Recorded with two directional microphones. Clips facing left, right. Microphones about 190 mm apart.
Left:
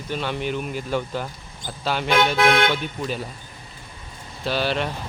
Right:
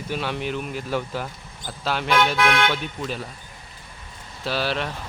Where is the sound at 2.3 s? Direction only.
35° left (ahead or behind).